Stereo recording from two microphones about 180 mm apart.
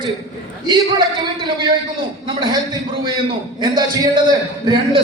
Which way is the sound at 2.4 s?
25° right (ahead or behind).